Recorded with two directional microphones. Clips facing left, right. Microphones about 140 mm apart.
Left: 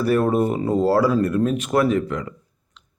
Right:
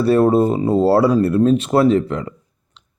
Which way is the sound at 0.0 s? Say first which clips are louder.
Right 5 dB; 30° right (ahead or behind).